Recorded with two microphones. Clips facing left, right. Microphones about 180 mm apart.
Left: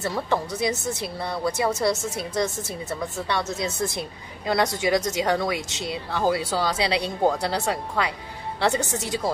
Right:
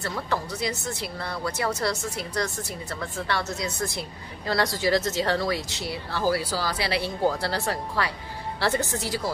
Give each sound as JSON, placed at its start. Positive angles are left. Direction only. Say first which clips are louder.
{"t": 0.0, "sound": "speech", "louder": "left 4 dB", "side_deg": 20}